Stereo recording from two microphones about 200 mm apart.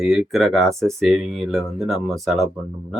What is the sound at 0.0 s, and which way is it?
Speech, centre (ahead or behind).